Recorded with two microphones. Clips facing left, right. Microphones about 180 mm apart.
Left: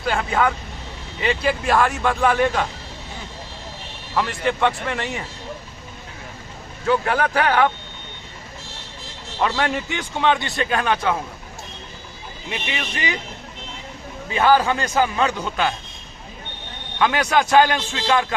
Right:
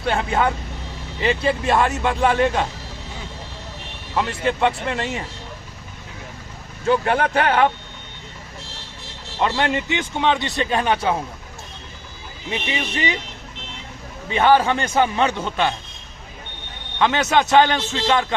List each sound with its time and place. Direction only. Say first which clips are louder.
0.0 s speech: even; 25° right (ahead or behind)
4.1 s speech: even; 20° right (ahead or behind)
6.8 s speech: right 1 dB; 25° right (ahead or behind)
9.4 s speech: right 1 dB; 20° right (ahead or behind)
12.5 s speech: right 3 dB; 25° right (ahead or behind)
14.3 s speech: right 1 dB; 25° right (ahead or behind)
15.4 s a man's voice: right 1 dB; 5° left (ahead or behind)
17.0 s speech: right 1 dB; 25° right (ahead or behind)